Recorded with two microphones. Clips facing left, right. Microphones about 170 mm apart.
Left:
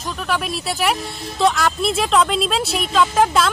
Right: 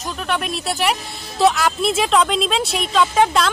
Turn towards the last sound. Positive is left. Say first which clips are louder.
# even
turn(degrees=0)  # may be behind; listen again after turning